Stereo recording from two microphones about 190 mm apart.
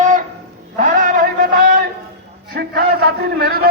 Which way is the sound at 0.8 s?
45° right (ahead or behind).